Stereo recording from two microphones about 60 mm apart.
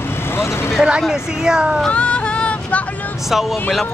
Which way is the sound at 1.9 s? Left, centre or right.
Centre.